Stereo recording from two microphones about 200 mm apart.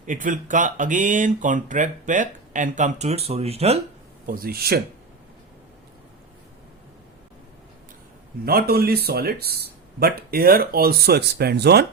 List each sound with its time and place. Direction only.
0.0 s speech: 40° right (ahead or behind)
4.3 s speech: 45° right (ahead or behind)
8.4 s speech: 50° right (ahead or behind)